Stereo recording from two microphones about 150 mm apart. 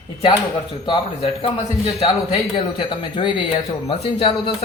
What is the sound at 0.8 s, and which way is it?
Speech, 35° left (ahead or behind).